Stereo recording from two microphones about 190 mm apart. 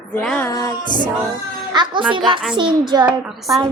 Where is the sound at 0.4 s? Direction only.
15° left (ahead or behind).